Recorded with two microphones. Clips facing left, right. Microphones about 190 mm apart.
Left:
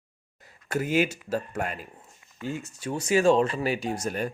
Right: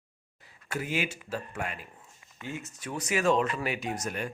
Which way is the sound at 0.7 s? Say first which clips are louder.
Left 7 dB; 45° left (ahead or behind).